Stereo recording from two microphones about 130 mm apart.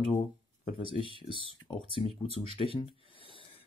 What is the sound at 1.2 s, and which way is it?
Speech, 45° right (ahead or behind).